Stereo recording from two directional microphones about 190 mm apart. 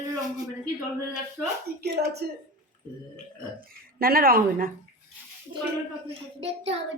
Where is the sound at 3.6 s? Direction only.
50° right (ahead or behind).